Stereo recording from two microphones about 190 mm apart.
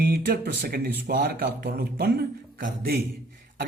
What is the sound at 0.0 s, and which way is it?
A man's voice, 55° right (ahead or behind).